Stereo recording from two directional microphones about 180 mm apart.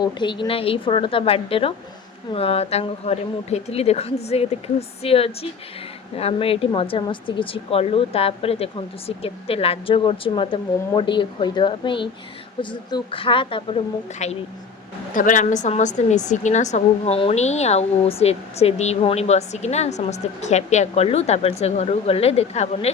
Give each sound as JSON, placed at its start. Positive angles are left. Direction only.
{"t": 0.0, "sound": "a woman's voice", "side_deg": 25}
{"t": 14.2, "sound": "a woman's voice", "side_deg": 40}